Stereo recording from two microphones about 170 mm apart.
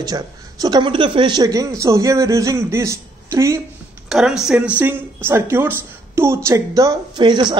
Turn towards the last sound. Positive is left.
turn(degrees=-25)  # may be behind; listen again after turning